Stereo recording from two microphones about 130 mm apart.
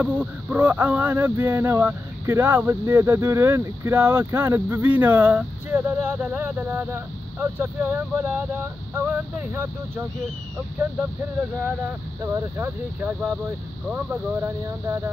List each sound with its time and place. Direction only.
0.0 s speech: 10° right (ahead or behind)
12.3 s speech: 20° right (ahead or behind)